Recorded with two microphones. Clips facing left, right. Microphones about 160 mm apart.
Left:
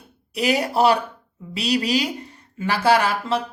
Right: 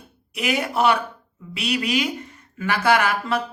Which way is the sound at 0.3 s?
35° left (ahead or behind).